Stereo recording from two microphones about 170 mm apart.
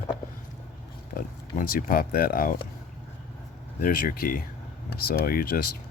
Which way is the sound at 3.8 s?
55° left (ahead or behind).